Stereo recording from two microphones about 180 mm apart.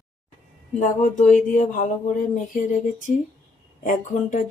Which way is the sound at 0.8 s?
45° left (ahead or behind).